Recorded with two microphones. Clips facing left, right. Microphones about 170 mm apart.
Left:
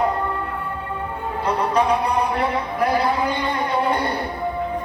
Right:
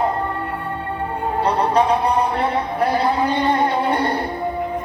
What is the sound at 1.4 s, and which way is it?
Music, 30° right (ahead or behind).